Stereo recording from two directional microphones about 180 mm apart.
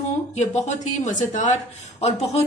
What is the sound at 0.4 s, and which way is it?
A woman's voice, 40° left (ahead or behind).